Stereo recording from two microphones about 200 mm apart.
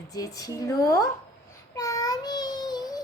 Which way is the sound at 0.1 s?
15° left (ahead or behind).